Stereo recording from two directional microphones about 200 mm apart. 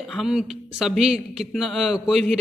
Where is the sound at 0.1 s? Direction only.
Centre (ahead or behind).